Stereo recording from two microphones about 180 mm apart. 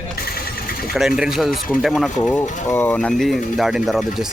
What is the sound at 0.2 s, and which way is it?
Engine, 60° left (ahead or behind).